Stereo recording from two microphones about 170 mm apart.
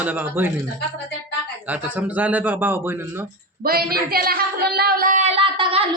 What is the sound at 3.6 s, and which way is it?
Speech, 60° right (ahead or behind).